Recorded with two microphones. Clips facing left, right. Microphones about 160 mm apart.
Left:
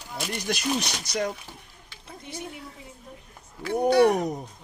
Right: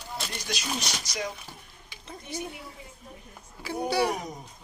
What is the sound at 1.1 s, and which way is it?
Speech, 55° left (ahead or behind).